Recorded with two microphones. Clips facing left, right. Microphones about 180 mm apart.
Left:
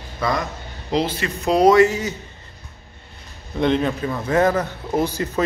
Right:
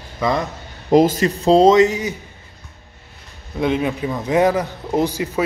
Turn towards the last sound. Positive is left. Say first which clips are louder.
# right 2 dB
turn(degrees=-15)  # may be behind; listen again after turning